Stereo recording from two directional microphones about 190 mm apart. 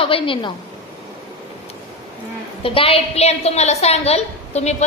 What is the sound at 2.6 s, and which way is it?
A woman's voice, 30° left (ahead or behind).